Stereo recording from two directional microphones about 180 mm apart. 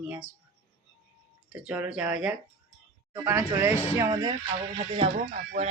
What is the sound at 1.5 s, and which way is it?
Speech, 5° right (ahead or behind).